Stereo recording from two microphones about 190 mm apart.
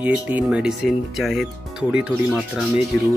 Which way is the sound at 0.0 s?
10° right (ahead or behind).